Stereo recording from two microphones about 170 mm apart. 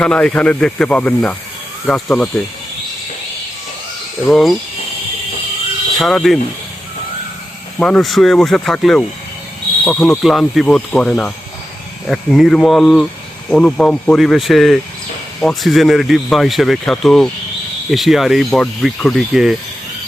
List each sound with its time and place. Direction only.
0.0 s speech: 5° left (ahead or behind)
4.3 s speech: centre (ahead or behind)
6.0 s speech: centre (ahead or behind)
7.8 s speech: 5° left (ahead or behind)